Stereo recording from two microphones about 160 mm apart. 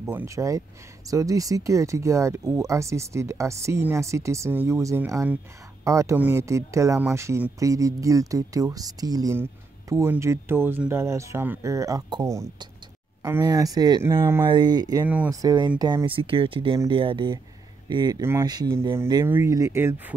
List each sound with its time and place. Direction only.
0.0 s speech: 15° right (ahead or behind)
14.1 s speech: 15° right (ahead or behind)
14.5 s speech: 25° right (ahead or behind)